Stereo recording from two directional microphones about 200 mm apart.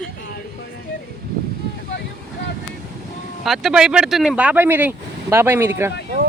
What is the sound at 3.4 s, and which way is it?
Speech, centre (ahead or behind).